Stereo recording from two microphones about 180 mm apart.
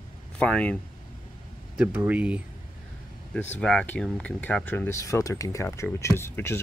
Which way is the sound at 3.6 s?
10° left (ahead or behind).